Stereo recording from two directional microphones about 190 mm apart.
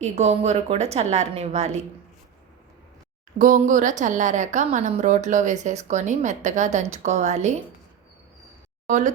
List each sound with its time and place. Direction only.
0.0 s a woman's voice: 35° right (ahead or behind)
3.3 s a woman's voice: 40° right (ahead or behind)
8.9 s a woman's voice: 40° right (ahead or behind)